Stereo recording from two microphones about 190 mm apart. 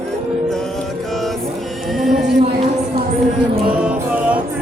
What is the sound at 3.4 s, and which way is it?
Music, 5° right (ahead or behind).